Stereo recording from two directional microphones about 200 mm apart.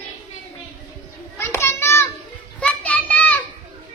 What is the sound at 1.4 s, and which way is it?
Children playing, 15° left (ahead or behind).